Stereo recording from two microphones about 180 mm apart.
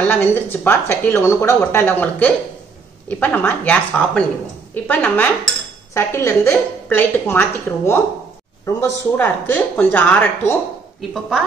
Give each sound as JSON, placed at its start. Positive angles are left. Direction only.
{"t": 0.1, "sound": "speech", "side_deg": 15}